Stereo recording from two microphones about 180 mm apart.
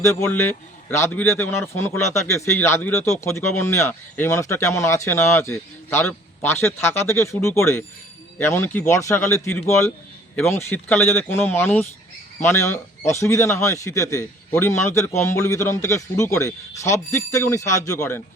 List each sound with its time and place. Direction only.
0.0 s speech: 15° left (ahead or behind)